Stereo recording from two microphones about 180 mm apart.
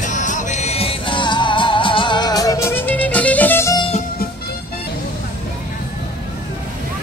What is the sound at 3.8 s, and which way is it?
Music, 30° left (ahead or behind).